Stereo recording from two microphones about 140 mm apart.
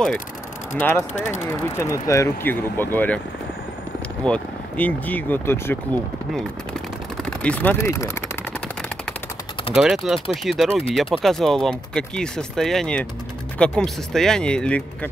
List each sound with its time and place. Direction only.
0.7 s speech: 15° left (ahead or behind)
4.2 s speech: 10° left (ahead or behind)
7.2 s speech: 10° left (ahead or behind)
8.5 s machine gun: 5° left (ahead or behind)
9.8 s speech: 5° right (ahead or behind)